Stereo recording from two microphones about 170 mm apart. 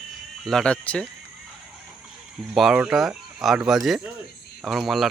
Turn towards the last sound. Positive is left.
turn(degrees=0)  # may be behind; listen again after turning